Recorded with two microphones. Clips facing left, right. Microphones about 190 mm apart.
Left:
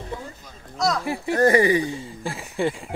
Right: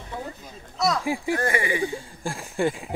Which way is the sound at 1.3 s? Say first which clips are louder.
Left 10 dB; 35° left (ahead or behind).